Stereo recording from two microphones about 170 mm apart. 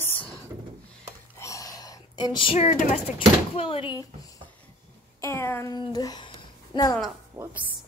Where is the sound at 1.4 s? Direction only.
20° left (ahead or behind); by 3.0 s 45° left (ahead or behind).